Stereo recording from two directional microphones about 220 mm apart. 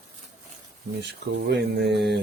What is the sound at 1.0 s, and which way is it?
Speech, 50° right (ahead or behind).